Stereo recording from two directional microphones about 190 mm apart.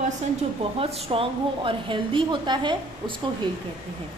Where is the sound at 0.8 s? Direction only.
30° right (ahead or behind).